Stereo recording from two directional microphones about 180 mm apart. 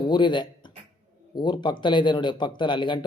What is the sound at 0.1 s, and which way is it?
Speech, 25° left (ahead or behind).